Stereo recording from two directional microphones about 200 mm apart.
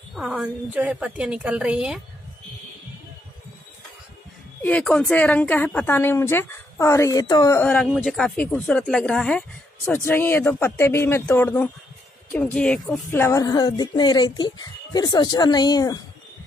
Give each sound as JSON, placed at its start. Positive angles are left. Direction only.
{"t": 0.1, "sound": "a woman's voice", "side_deg": -5}
{"t": 4.6, "sound": "a woman's voice", "side_deg": 5}